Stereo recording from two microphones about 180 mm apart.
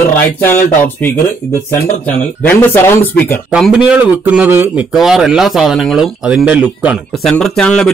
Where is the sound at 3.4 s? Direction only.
5° right (ahead or behind).